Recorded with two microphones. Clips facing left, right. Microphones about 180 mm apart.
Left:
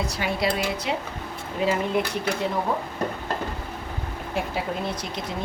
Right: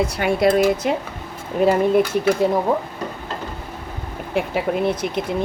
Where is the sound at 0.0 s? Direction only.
55° right (ahead or behind).